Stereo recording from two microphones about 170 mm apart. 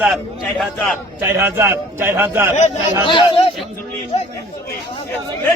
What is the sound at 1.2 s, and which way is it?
A man's voice, 15° right (ahead or behind).